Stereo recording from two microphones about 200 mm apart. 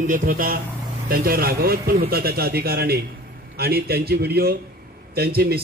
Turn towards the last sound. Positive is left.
turn(degrees=-50)  # may be behind; listen again after turning